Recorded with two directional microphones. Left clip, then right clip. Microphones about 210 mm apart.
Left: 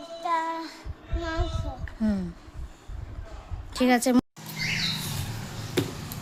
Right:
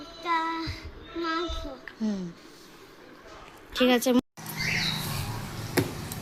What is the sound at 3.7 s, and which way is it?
Speech, 30° left (ahead or behind).